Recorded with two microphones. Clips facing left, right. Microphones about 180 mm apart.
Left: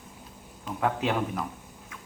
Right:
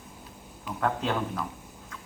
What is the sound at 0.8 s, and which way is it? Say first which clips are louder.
Speech: left 1 dB; 10° left (ahead or behind).